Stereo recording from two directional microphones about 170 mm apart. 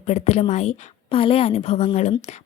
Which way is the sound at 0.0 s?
40° left (ahead or behind).